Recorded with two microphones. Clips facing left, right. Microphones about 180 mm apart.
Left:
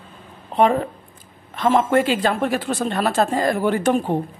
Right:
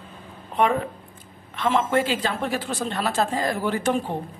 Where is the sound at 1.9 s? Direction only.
55° left (ahead or behind).